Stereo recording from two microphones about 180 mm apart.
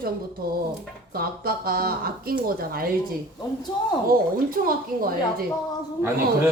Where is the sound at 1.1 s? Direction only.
55° right (ahead or behind).